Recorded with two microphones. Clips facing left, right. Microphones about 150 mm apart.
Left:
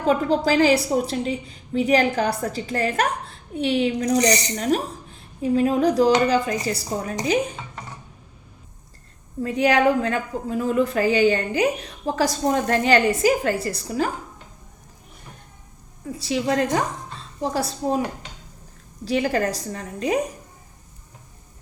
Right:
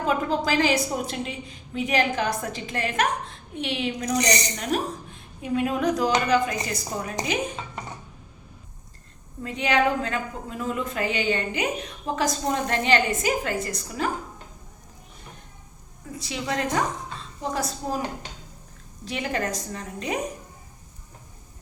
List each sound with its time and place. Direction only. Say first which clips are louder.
0.1 s a woman's voice: left 6 dB; 35° left (ahead or behind)
9.4 s a woman's voice: left 4 dB; 35° left (ahead or behind)
16.1 s a woman's voice: left 7 dB; 35° left (ahead or behind)
19.0 s a woman's voice: left 6 dB; 35° left (ahead or behind)